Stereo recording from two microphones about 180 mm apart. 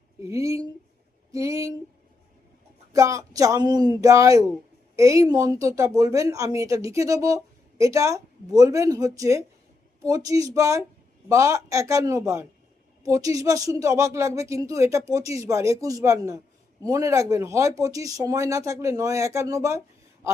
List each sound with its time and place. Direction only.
0.2 s speech: 15° right (ahead or behind)
2.9 s speech: 20° right (ahead or behind)